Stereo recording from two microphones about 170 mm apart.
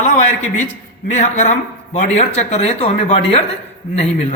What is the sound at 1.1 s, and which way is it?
Speech, 45° left (ahead or behind).